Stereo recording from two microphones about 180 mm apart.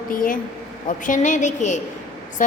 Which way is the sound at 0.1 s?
50° left (ahead or behind).